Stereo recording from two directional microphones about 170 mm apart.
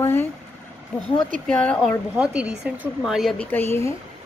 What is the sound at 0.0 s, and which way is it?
Speech, 15° left (ahead or behind).